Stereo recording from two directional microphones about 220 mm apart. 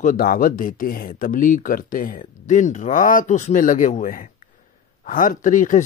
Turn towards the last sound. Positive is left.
turn(degrees=35)  # may be behind; listen again after turning